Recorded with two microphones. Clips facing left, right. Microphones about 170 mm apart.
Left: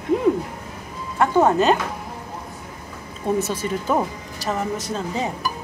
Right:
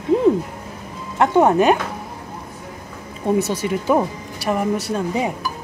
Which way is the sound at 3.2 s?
15° right (ahead or behind).